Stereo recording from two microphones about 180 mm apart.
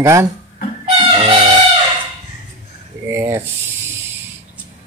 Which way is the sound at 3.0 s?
15° right (ahead or behind).